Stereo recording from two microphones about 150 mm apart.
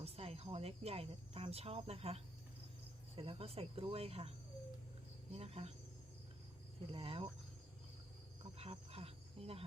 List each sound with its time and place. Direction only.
0.0 s speech: 40° right (ahead or behind)
6.9 s speech: 40° right (ahead or behind)
8.5 s insect: 40° right (ahead or behind)